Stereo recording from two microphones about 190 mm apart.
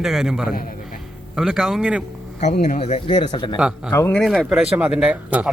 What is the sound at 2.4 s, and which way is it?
Speech, 40° left (ahead or behind).